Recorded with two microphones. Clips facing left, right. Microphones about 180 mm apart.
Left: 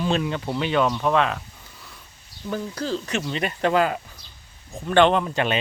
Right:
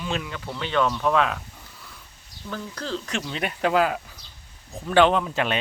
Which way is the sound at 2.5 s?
10° left (ahead or behind).